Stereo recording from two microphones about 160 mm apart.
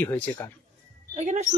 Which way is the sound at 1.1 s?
45° right (ahead or behind).